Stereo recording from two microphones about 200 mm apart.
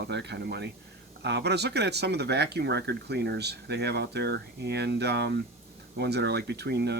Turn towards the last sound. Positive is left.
turn(degrees=-55)  # may be behind; listen again after turning